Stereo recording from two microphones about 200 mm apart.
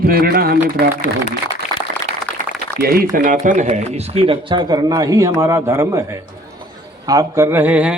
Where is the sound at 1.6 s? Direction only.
35° left (ahead or behind).